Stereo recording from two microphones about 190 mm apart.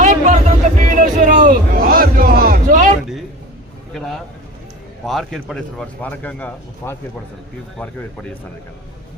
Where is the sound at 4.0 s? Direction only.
Centre (ahead or behind).